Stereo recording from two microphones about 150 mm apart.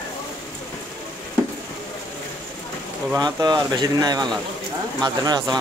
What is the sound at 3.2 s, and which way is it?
Speech, 25° right (ahead or behind).